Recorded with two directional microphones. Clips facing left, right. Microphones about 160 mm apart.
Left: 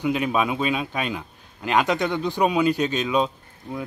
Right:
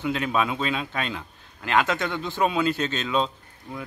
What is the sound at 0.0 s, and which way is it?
Speech, 15° left (ahead or behind).